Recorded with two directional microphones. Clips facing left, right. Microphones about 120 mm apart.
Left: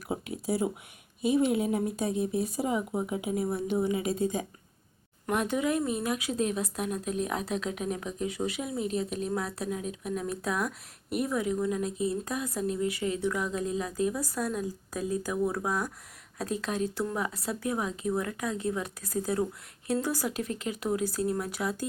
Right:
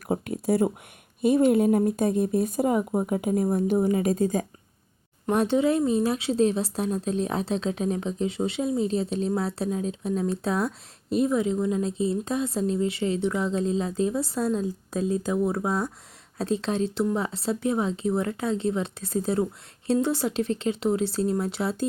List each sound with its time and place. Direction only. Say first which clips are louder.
0.1 s a sound: right 7 dB; 50° right (ahead or behind)
1.2 s speech: right 6 dB; 50° right (ahead or behind)
5.2 s speech: right 6 dB; 30° right (ahead or behind)